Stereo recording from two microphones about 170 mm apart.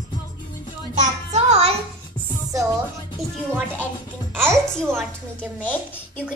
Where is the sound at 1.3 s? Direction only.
40° right (ahead or behind).